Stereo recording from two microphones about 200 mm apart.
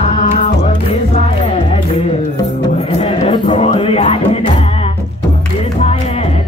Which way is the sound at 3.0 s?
30° left (ahead or behind).